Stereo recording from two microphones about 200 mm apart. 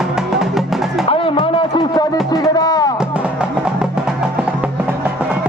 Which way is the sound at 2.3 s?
20° left (ahead or behind).